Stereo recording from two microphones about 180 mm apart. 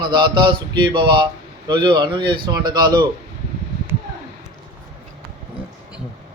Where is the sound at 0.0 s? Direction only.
25° right (ahead or behind).